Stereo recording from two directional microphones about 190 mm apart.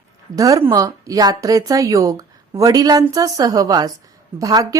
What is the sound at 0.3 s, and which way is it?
A woman's voice, 15° right (ahead or behind).